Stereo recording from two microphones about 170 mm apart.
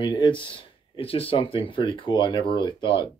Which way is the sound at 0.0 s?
30° left (ahead or behind).